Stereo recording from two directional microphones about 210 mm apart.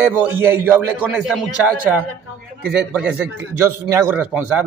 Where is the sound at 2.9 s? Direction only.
5° right (ahead or behind).